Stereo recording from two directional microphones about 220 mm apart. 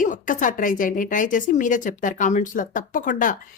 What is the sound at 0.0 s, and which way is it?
Speech, 35° left (ahead or behind).